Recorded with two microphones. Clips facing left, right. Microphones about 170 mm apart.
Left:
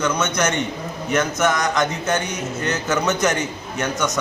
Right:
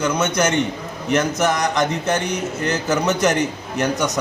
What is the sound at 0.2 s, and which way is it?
Mantra, 35° right (ahead or behind).